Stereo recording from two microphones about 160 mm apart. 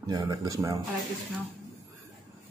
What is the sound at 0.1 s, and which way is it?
Speech, 25° right (ahead or behind).